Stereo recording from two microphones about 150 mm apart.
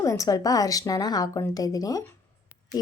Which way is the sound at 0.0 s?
20° left (ahead or behind).